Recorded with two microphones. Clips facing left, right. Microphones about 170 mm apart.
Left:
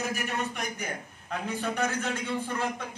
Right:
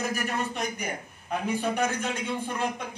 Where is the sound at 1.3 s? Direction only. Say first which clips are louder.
Right 4 dB; 15° right (ahead or behind).